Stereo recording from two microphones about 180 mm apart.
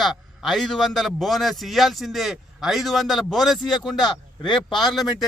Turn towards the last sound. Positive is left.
turn(degrees=0)  # may be behind; listen again after turning